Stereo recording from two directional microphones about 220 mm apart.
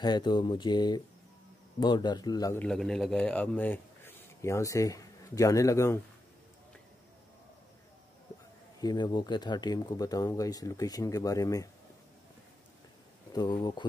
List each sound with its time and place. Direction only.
0.0 s speech: 20° left (ahead or behind)
2.6 s a man's voice: centre (ahead or behind)
8.8 s speech: 20° left (ahead or behind)
13.3 s speech: 20° left (ahead or behind)